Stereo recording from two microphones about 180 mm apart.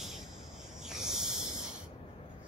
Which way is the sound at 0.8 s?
5° right (ahead or behind).